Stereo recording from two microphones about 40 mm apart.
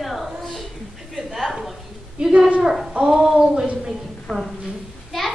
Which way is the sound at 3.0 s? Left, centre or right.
Centre.